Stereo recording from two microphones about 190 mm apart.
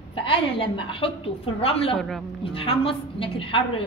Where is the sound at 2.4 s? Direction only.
30° left (ahead or behind).